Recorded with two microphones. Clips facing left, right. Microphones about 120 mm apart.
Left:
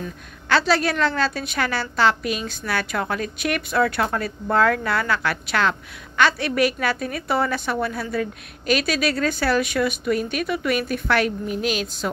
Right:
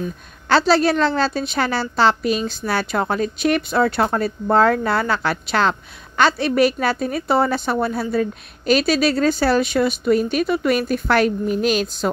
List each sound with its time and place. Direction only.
0.5 s a woman's voice: 30° right (ahead or behind)